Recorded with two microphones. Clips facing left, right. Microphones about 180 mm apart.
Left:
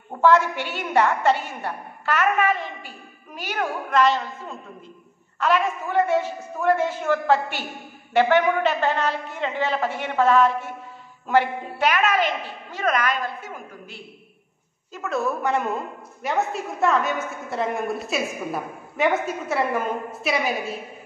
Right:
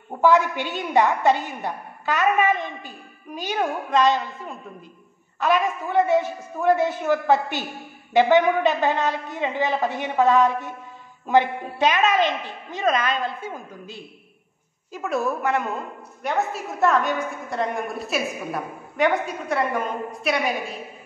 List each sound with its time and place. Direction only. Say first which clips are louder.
0.2 s a woman's voice: even; 15° right (ahead or behind)
15.4 s a woman's voice: left 1 dB; centre (ahead or behind)